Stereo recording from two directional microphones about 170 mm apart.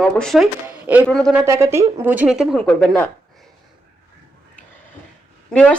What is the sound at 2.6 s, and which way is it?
Speech, 5° left (ahead or behind).